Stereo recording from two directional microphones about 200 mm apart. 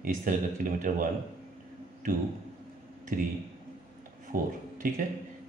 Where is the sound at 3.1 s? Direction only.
45° right (ahead or behind).